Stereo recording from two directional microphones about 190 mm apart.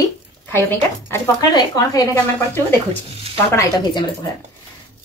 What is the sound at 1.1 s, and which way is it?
Speech, 20° left (ahead or behind).